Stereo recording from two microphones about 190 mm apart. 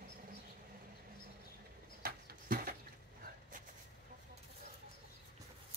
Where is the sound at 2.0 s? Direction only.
50° right (ahead or behind).